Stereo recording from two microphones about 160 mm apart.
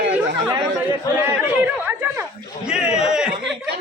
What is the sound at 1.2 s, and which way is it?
Speech, 10° right (ahead or behind).